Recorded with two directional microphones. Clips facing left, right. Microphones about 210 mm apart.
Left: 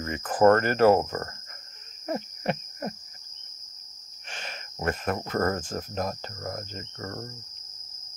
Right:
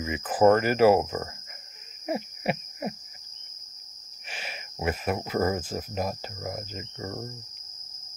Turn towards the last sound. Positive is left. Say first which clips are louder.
# right 1 dB
turn(degrees=-10)  # may be behind; listen again after turning